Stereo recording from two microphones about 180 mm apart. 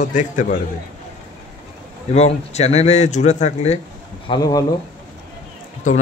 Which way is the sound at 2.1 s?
35° left (ahead or behind).